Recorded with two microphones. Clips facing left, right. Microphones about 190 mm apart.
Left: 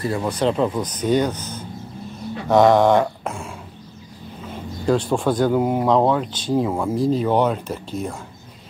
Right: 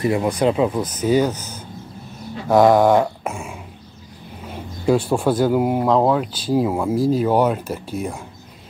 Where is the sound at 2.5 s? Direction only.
5° right (ahead or behind).